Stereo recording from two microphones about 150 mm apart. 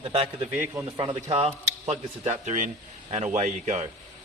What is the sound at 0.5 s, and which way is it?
Speech, 15° right (ahead or behind).